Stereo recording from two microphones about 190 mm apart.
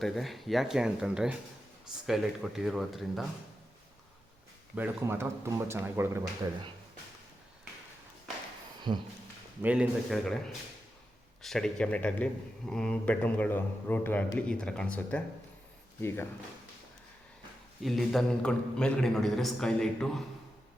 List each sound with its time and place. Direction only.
0.0 s a man's voice: centre (ahead or behind)
4.7 s speech: 10° right (ahead or behind)
8.9 s speech: 25° right (ahead or behind)
9.6 s a man's voice: 5° right (ahead or behind)
11.4 s a man's voice: 5° left (ahead or behind)
17.8 s a man's voice: centre (ahead or behind)